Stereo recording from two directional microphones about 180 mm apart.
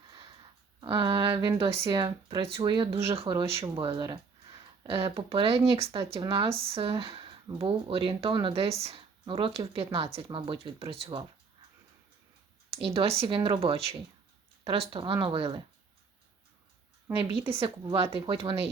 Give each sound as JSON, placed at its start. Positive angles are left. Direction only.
{"t": 0.8, "sound": "speech", "side_deg": -25}
{"t": 12.7, "sound": "speech", "side_deg": -30}
{"t": 17.2, "sound": "speech", "side_deg": -30}